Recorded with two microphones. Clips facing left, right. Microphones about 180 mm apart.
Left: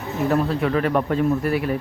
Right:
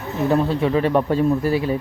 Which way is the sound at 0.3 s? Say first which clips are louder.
Right 2 dB; 25° right (ahead or behind).